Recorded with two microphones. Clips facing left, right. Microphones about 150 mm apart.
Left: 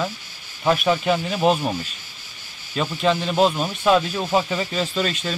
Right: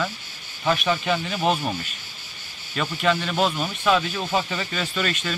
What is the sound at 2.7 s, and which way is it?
A man's voice, 30° left (ahead or behind).